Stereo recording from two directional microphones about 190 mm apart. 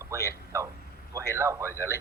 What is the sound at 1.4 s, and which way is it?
Speech, 15° right (ahead or behind).